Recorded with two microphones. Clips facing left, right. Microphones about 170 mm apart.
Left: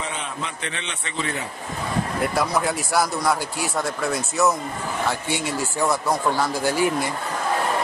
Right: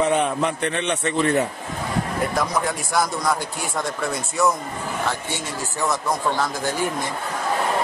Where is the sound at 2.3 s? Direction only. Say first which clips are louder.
Left 2 dB; 5° left (ahead or behind).